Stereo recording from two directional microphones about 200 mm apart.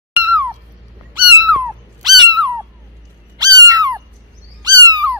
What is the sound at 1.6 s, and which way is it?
Dog, 15° right (ahead or behind).